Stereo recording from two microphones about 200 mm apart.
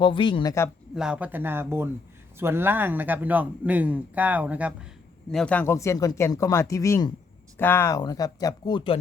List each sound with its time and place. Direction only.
0.0 s speech: 25° left (ahead or behind)
0.9 s a man's voice: 5° right (ahead or behind)
5.3 s speech: 5° left (ahead or behind); by 9.0 s 25° left (ahead or behind)